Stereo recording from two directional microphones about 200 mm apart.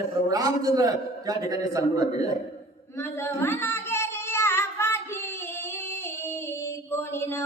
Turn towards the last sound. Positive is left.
turn(degrees=10)  # may be behind; listen again after turning